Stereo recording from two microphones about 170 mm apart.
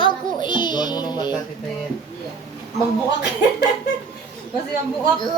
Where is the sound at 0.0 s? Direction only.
25° left (ahead or behind).